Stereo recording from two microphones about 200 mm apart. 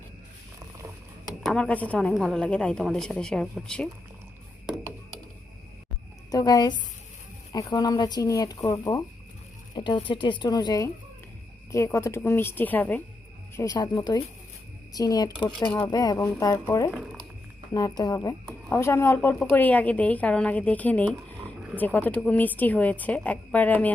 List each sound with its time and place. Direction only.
1.5 s speech: 5° left (ahead or behind)
6.3 s a woman's voice: 20° left (ahead or behind)
13.6 s a woman's voice: 20° left (ahead or behind)
16.9 s speech: 5° right (ahead or behind)
17.7 s a woman's voice: 15° left (ahead or behind)